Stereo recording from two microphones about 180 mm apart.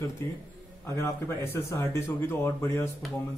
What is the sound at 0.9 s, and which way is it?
Speech, 15° left (ahead or behind).